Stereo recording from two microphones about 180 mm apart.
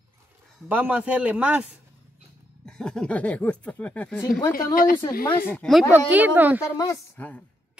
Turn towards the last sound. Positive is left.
turn(degrees=10)  # may be behind; listen again after turning